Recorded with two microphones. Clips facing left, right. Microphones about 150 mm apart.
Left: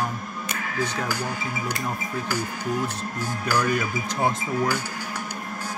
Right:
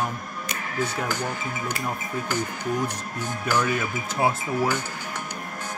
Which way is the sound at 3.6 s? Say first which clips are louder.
Left 2 dB; 5° right (ahead or behind).